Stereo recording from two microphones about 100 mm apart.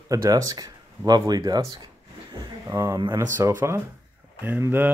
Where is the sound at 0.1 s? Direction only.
40° right (ahead or behind).